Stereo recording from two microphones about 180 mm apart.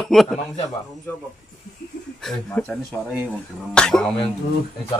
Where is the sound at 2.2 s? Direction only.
5° left (ahead or behind).